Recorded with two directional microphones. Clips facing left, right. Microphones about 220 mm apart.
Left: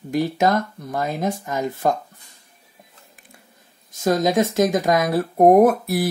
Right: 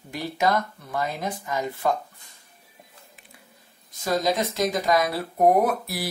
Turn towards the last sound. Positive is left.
turn(degrees=50)  # may be behind; listen again after turning